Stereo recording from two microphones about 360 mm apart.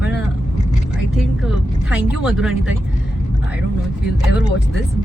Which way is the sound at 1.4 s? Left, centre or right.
Centre.